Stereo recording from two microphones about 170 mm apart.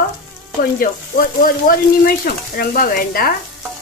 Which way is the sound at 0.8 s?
55° left (ahead or behind).